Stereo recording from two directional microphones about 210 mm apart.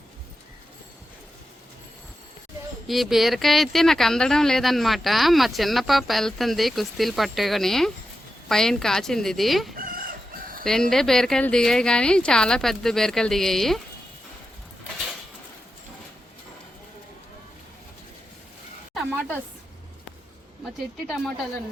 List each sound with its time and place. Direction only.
2.8 s speech: centre (ahead or behind)
9.7 s chicken: 40° right (ahead or behind)
10.7 s speech: centre (ahead or behind)
18.9 s a sound: centre (ahead or behind)